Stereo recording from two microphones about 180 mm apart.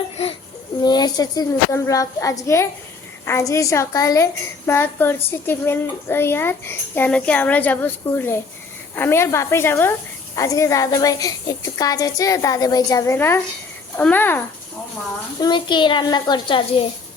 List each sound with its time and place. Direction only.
0.8 s a woman's voice: 20° left (ahead or behind)
15.4 s a woman's voice: 25° left (ahead or behind)